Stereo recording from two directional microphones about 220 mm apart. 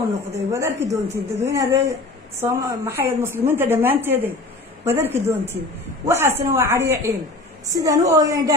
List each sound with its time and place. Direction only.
0.3 s a woman's voice: 10° right (ahead or behind)